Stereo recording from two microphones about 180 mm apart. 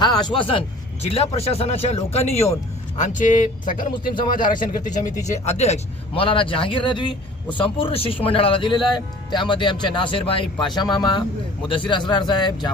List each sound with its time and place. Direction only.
0.0 s a man's voice: 25° left (ahead or behind)